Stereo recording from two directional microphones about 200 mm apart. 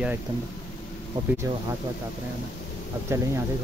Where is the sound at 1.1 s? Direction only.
20° right (ahead or behind).